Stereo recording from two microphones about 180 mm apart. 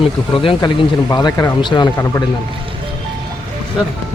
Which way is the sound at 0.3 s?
30° left (ahead or behind).